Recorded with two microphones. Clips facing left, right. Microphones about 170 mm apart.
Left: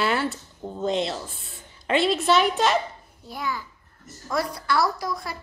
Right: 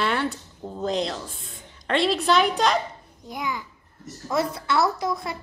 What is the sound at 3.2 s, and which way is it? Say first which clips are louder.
A child's voice: right 1 dB; 20° right (ahead or behind).